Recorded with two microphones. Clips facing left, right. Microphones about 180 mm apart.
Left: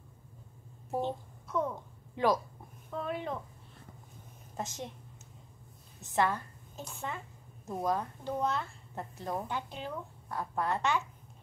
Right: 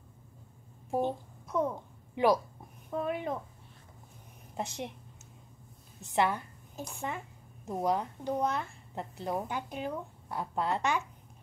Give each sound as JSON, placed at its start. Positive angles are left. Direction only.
{"t": 0.8, "sound": "a sound", "side_deg": -15}
{"t": 2.9, "sound": "a woman's voice", "side_deg": -15}
{"t": 4.6, "sound": "a woman's voice", "side_deg": -15}
{"t": 6.1, "sound": "a woman's voice", "side_deg": -15}